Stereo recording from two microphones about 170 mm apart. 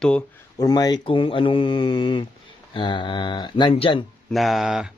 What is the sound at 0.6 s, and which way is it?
Speech, 20° left (ahead or behind).